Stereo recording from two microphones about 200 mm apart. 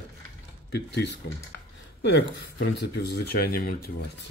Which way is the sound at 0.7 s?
60° left (ahead or behind).